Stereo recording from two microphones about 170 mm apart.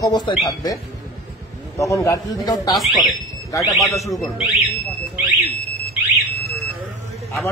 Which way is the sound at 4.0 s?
Centre (ahead or behind).